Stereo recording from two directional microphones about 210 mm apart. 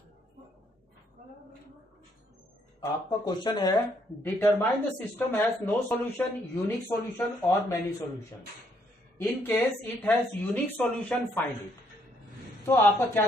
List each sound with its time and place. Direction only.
2.8 s speech: 20° left (ahead or behind)
4.2 s speech: 10° left (ahead or behind)
9.2 s speech: 10° left (ahead or behind)
12.6 s speech: 10° left (ahead or behind)